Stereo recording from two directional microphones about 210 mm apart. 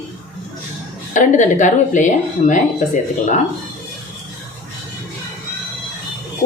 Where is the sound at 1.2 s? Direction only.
35° left (ahead or behind).